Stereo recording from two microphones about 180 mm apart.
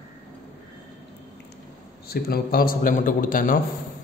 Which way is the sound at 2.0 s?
60° left (ahead or behind).